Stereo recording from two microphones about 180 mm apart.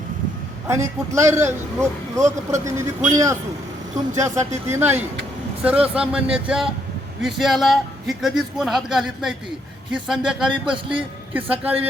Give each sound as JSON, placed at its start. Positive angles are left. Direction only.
{"t": 0.7, "sound": "speech", "side_deg": -15}
{"t": 4.7, "sound": "a man's voice", "side_deg": -10}